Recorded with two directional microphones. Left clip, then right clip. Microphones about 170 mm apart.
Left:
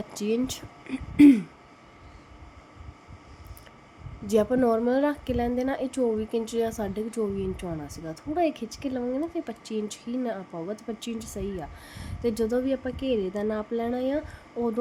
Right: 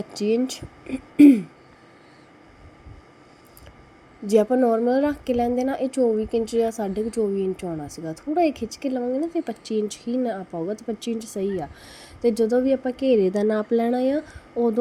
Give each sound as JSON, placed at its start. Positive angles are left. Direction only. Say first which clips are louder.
{"t": 0.1, "sound": "speech", "louder": "right 5 dB", "side_deg": -10}
{"t": 4.3, "sound": "a woman's voice", "louder": "right 4 dB", "side_deg": -10}
{"t": 13.1, "sound": "speech", "louder": "right 8 dB", "side_deg": -35}